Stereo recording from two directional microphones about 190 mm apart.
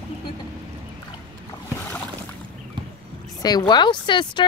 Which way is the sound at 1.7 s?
10° left (ahead or behind).